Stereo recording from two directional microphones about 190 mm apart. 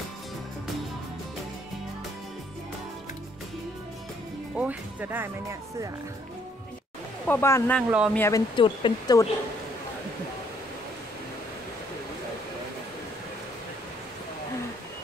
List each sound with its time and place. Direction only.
4.6 s speech: 10° right (ahead or behind)
7.2 s speech: 10° left (ahead or behind)